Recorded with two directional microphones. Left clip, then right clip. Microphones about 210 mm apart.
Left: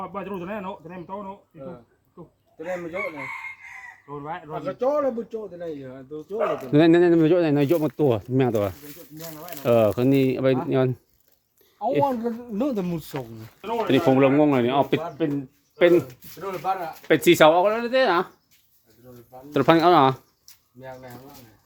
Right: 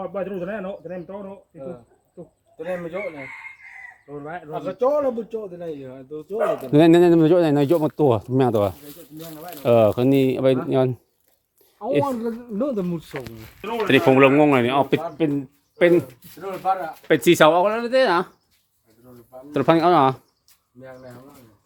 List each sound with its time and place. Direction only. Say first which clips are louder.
0.0 s speech: right 4 dB; 20° left (ahead or behind)
1.5 s a man's voice: right 4 dB; 30° right (ahead or behind)
4.5 s a man's voice: right 3 dB; 30° right (ahead or behind)
6.3 s speech: right 3 dB; 50° right (ahead or behind)
6.7 s speech: right 3 dB; 10° right (ahead or behind); by 9.6 s 10° left (ahead or behind)
9.6 s speech: right 3 dB; 10° right (ahead or behind)
12.2 s speech: right 1 dB; 40° left (ahead or behind)
13.8 s a man's voice: right 4 dB; centre (ahead or behind); by 15.4 s 15° right (ahead or behind)
15.8 s a man's voice: right 1 dB; 5° right (ahead or behind)
19.5 s a man's voice: even; centre (ahead or behind)